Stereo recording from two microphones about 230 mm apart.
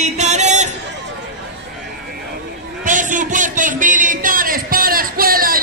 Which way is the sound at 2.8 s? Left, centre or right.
Right.